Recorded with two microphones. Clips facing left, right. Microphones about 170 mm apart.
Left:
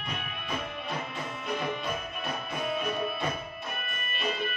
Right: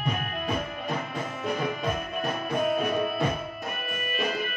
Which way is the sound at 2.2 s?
50° right (ahead or behind).